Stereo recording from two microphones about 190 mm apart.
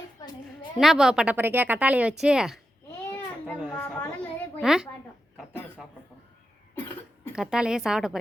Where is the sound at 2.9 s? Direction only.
10° left (ahead or behind).